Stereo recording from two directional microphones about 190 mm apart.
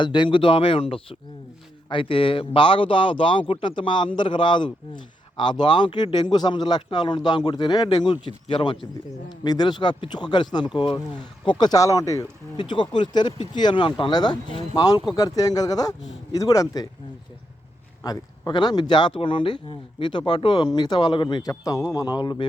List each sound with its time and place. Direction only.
0.0 s speech: 25° left (ahead or behind)
18.0 s speech: 20° left (ahead or behind)